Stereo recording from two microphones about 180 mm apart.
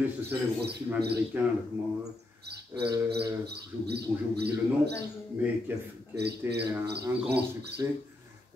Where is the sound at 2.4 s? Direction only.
65° right (ahead or behind).